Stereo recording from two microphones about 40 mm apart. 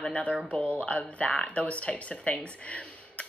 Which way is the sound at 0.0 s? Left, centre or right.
Left.